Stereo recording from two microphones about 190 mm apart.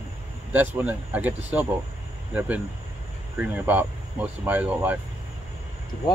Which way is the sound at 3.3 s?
10° right (ahead or behind).